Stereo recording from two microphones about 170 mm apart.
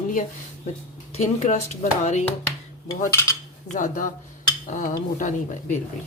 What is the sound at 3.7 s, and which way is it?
Speech, 50° left (ahead or behind).